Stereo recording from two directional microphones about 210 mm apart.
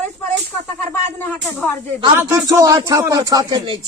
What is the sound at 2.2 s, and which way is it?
Speech, 15° right (ahead or behind).